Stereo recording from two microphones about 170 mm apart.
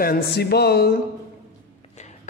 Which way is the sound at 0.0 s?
65° left (ahead or behind).